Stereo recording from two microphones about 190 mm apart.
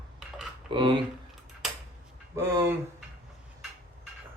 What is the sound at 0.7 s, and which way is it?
Speech, 25° right (ahead or behind).